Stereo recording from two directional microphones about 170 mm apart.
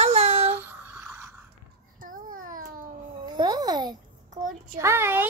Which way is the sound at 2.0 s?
55° right (ahead or behind).